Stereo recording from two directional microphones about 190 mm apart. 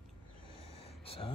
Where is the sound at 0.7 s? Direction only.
30° left (ahead or behind).